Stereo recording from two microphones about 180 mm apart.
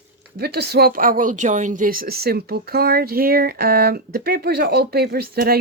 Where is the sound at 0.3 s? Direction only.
60° right (ahead or behind).